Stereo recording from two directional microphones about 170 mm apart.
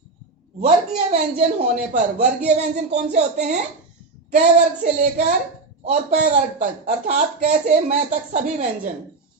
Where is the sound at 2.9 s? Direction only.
40° right (ahead or behind).